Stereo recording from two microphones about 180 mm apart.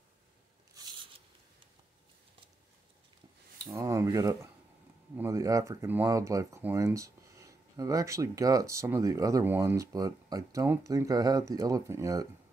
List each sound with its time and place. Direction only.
3.5 s speech: 20° right (ahead or behind)